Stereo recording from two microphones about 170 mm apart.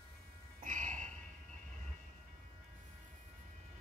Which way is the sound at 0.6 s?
50° right (ahead or behind).